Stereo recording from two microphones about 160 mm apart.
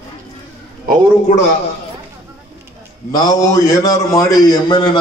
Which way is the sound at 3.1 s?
25° left (ahead or behind).